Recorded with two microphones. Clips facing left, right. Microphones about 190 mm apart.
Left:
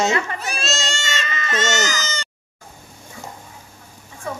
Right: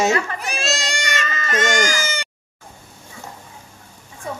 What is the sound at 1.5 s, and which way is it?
Speech, 15° right (ahead or behind).